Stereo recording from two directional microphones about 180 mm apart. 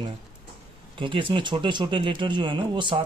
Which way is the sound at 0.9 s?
30° right (ahead or behind).